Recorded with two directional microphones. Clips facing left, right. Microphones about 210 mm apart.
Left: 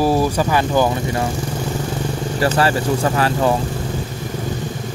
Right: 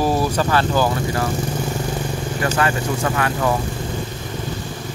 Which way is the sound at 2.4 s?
35° left (ahead or behind).